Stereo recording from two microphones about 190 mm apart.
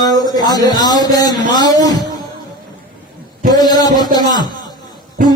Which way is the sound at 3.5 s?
20° left (ahead or behind).